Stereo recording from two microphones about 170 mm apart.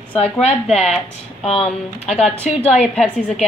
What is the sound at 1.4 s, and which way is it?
Speech, 35° left (ahead or behind).